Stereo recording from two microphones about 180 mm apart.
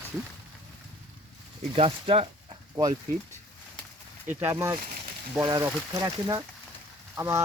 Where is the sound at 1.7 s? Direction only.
30° right (ahead or behind).